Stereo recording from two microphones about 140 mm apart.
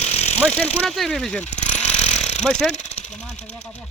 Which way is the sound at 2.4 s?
5° left (ahead or behind).